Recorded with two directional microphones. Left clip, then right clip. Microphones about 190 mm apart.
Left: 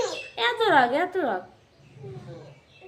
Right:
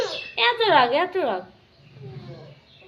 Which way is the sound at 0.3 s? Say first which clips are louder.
Right 3 dB; 15° left (ahead or behind).